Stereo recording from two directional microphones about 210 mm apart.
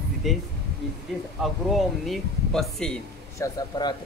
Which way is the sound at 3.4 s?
20° left (ahead or behind).